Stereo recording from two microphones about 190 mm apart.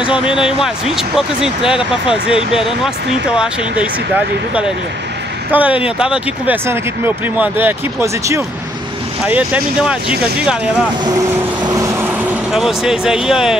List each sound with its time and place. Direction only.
0.0 s speech: 5° right (ahead or behind)
5.5 s speech: 5° right (ahead or behind)
11.6 s vehicle: 15° right (ahead or behind)
12.5 s speech: centre (ahead or behind)